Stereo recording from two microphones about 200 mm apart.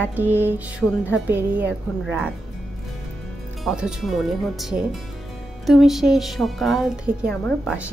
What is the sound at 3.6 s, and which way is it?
Speech, 5° right (ahead or behind).